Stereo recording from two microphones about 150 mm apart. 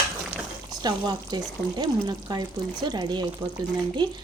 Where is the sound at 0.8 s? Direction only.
30° right (ahead or behind).